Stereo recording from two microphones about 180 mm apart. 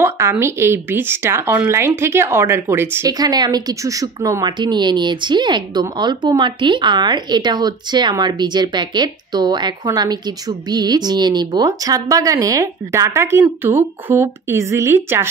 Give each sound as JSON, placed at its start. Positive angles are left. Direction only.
{"t": 0.0, "sound": "speech", "side_deg": -15}